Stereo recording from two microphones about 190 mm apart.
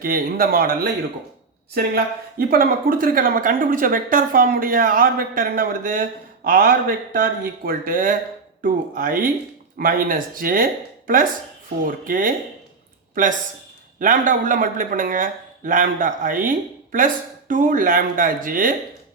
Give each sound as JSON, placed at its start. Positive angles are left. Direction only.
{"t": 0.0, "sound": "speech", "side_deg": -50}
{"t": 14.0, "sound": "speech", "side_deg": -45}